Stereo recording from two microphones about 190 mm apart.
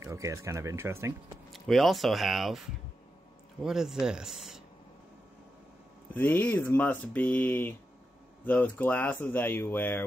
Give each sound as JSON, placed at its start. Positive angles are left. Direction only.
{"t": 0.0, "sound": "speech", "side_deg": -15}
{"t": 1.5, "sound": "speech", "side_deg": 0}
{"t": 6.1, "sound": "speech", "side_deg": 10}